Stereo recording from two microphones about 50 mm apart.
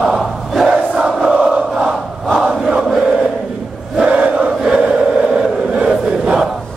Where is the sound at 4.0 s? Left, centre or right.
Centre.